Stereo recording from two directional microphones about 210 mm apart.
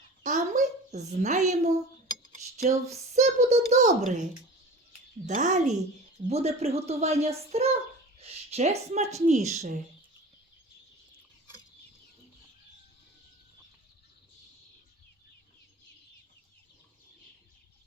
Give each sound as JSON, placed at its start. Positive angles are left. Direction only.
{"t": 0.2, "sound": "a woman's voice", "side_deg": -35}
{"t": 2.3, "sound": "cutlery", "side_deg": -35}
{"t": 3.1, "sound": "a woman's voice", "side_deg": -35}